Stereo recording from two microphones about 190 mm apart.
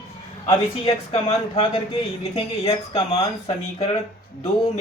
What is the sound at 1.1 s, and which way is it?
Speech, 30° left (ahead or behind).